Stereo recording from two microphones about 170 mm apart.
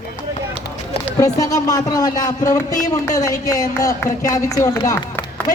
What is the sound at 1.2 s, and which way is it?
A man's voice, 20° left (ahead or behind).